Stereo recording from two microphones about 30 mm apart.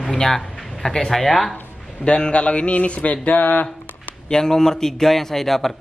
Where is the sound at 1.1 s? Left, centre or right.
Centre.